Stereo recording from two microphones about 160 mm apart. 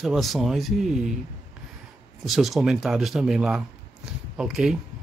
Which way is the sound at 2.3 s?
Centre (ahead or behind).